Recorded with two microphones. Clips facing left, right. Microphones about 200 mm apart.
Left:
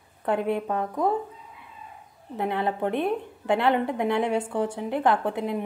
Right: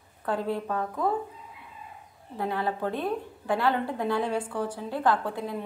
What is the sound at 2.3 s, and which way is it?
A woman's voice, 20° left (ahead or behind).